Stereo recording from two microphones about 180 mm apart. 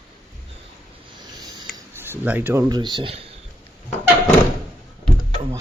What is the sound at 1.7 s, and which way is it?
Speech, 15° right (ahead or behind).